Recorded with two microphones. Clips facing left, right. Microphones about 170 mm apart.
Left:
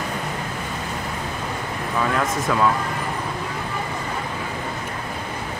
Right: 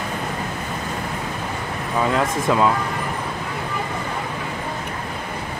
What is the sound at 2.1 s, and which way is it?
Speech, 20° right (ahead or behind).